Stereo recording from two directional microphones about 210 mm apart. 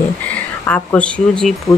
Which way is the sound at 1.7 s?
20° left (ahead or behind).